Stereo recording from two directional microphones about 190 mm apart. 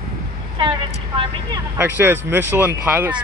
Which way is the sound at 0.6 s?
25° right (ahead or behind).